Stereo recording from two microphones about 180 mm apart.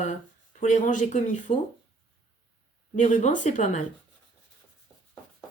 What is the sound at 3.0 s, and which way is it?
Speech, 45° left (ahead or behind).